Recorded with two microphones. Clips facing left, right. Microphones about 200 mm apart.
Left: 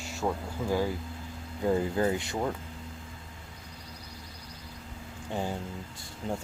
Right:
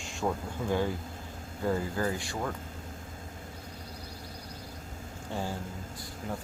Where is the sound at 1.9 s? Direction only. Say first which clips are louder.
Left 4 dB; 20° left (ahead or behind).